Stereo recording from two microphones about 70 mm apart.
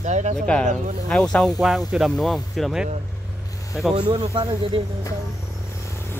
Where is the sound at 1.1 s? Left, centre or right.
Centre.